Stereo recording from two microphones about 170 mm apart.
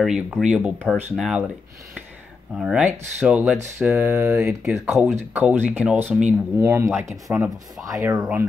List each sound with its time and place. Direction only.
0.0 s speech: 5° right (ahead or behind)
2.6 s speech: 5° right (ahead or behind)
8.2 s speech: 10° right (ahead or behind)